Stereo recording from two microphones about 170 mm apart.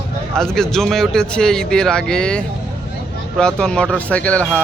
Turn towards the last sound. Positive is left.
turn(degrees=10)  # may be behind; listen again after turning